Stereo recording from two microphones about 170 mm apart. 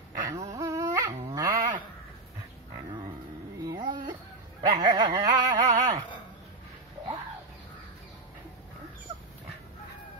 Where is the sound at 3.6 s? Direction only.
25° right (ahead or behind).